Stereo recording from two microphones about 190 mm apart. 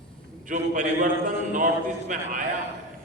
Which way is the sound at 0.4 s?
45° right (ahead or behind).